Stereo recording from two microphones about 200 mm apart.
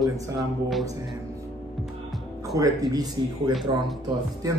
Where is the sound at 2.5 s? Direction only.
15° right (ahead or behind).